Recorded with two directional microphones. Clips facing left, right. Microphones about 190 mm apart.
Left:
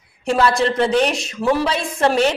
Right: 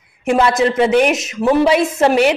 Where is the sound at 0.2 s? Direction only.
15° right (ahead or behind).